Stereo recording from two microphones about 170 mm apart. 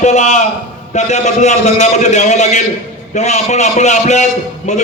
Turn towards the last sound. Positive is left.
turn(degrees=45)  # may be behind; listen again after turning